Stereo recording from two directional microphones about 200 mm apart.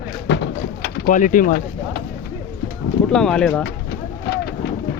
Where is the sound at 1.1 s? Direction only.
40° left (ahead or behind).